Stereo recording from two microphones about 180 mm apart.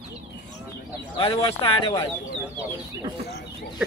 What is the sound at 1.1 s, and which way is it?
Speech, 30° left (ahead or behind).